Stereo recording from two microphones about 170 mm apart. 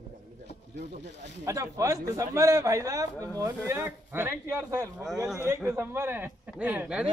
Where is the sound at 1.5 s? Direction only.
20° right (ahead or behind).